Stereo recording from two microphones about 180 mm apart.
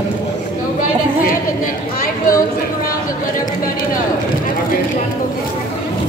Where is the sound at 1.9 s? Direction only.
50° left (ahead or behind).